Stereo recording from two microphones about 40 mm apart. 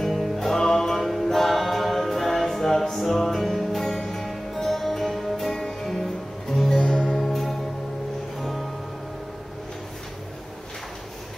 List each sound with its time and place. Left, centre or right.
0.0 s music: centre
7.2 s music: centre